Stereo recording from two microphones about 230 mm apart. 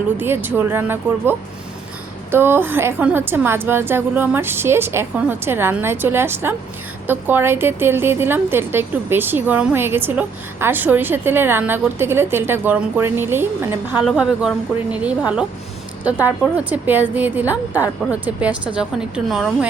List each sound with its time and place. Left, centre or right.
0.2 s a woman's voice: centre